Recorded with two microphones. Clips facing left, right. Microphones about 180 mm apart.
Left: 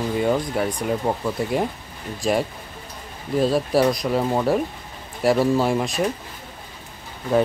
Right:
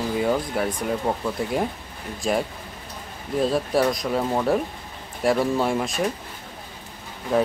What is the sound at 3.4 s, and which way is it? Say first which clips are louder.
Speech: left 2 dB; centre (ahead or behind).